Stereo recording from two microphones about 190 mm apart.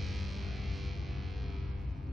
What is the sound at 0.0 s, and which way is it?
Music, centre (ahead or behind).